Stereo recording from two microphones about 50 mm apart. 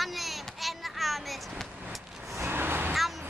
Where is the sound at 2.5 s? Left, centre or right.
Right.